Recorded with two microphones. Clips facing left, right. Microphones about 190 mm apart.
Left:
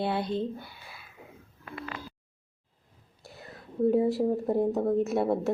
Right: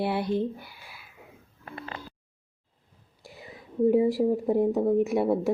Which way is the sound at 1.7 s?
35° right (ahead or behind).